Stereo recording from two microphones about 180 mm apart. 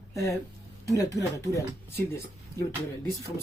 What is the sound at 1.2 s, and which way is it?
Speech, 15° left (ahead or behind).